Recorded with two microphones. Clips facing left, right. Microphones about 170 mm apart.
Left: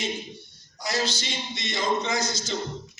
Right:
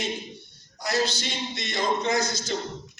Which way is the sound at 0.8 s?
55° right (ahead or behind).